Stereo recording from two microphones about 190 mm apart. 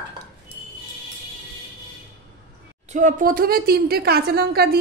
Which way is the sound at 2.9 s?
40° right (ahead or behind).